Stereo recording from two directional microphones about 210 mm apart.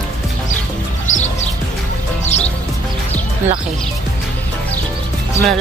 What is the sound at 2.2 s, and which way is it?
Music, 30° left (ahead or behind).